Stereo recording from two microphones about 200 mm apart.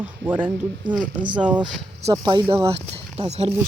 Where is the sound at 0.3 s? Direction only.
10° right (ahead or behind).